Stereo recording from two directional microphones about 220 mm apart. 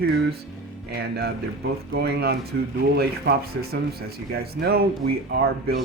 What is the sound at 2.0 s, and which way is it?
Speech, 45° right (ahead or behind).